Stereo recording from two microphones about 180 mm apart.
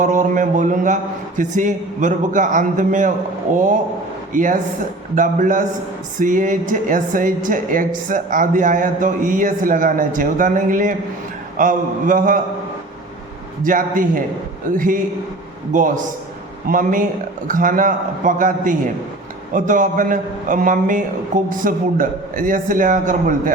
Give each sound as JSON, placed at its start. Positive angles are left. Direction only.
{"t": 0.0, "sound": "a woman's voice", "side_deg": -45}
{"t": 13.7, "sound": "a woman's voice", "side_deg": -50}